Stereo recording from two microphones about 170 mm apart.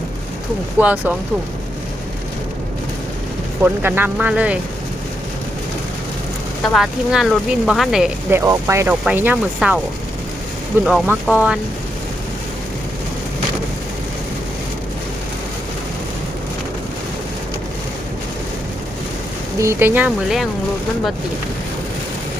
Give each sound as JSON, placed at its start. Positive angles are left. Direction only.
{"t": 0.8, "sound": "speech", "side_deg": -10}
{"t": 3.6, "sound": "speech", "side_deg": -10}
{"t": 6.7, "sound": "speech", "side_deg": 0}
{"t": 8.3, "sound": "speech", "side_deg": -15}
{"t": 10.8, "sound": "speech", "side_deg": 0}
{"t": 19.5, "sound": "speech", "side_deg": -15}